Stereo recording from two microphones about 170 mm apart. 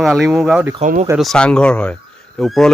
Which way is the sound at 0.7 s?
45° right (ahead or behind).